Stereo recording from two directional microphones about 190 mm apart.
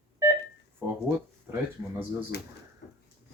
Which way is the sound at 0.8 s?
10° right (ahead or behind).